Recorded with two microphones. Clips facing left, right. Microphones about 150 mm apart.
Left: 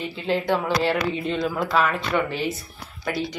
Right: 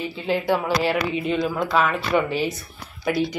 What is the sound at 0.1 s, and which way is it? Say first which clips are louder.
Speech: even; 5° right (ahead or behind).